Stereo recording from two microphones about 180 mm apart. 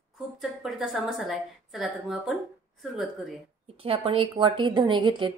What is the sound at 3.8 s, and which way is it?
A woman's voice, 30° right (ahead or behind).